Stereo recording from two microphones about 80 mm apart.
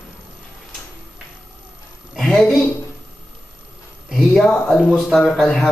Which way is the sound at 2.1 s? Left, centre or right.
Centre.